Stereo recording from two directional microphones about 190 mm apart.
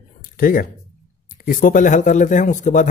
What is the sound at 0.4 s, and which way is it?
Speech, 50° left (ahead or behind).